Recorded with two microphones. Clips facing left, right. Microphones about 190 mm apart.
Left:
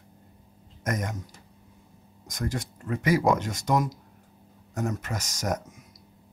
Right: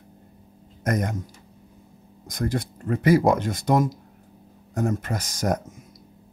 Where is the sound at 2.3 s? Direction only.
35° right (ahead or behind).